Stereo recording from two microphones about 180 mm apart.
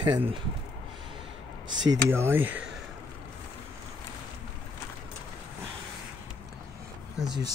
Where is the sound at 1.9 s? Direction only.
15° right (ahead or behind).